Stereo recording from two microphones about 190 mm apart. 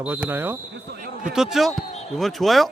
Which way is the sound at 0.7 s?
50° right (ahead or behind).